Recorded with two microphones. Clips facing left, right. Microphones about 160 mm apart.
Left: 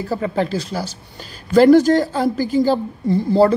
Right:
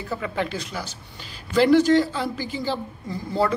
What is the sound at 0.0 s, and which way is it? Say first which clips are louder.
A woman's voice: left 7 dB; 35° left (ahead or behind).